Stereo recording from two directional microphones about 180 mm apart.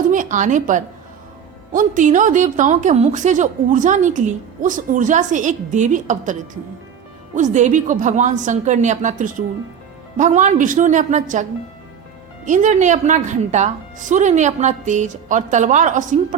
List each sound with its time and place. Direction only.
0.1 s a woman's voice: 45° right (ahead or behind)
12.5 s a woman's voice: 45° right (ahead or behind)